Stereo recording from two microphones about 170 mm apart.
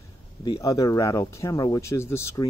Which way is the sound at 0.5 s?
20° left (ahead or behind).